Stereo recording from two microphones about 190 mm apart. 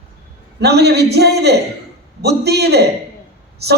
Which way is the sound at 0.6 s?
60° right (ahead or behind).